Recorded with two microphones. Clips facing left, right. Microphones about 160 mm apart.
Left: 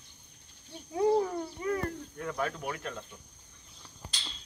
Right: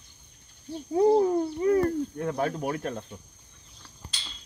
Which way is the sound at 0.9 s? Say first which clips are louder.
Right 6 dB; 35° right (ahead or behind).